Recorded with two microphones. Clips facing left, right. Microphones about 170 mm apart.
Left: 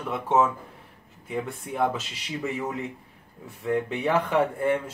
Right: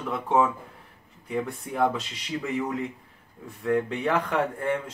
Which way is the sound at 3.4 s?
5° left (ahead or behind).